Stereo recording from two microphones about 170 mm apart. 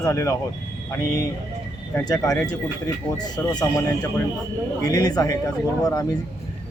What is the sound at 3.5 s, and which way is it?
A man's voice, 20° left (ahead or behind).